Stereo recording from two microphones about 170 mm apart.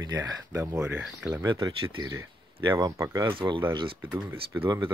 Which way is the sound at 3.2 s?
30° right (ahead or behind).